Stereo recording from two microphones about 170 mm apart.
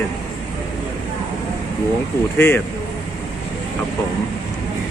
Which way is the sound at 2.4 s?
10° left (ahead or behind).